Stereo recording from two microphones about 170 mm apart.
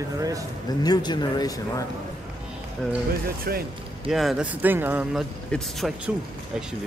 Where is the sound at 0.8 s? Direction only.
25° left (ahead or behind).